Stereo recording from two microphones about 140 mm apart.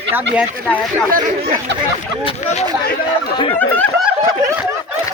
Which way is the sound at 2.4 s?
55° left (ahead or behind).